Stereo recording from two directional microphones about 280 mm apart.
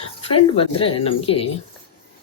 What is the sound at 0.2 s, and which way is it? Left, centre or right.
Speech, centre.